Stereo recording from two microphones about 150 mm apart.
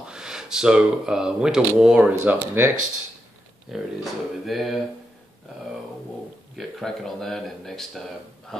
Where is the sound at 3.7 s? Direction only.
Centre (ahead or behind).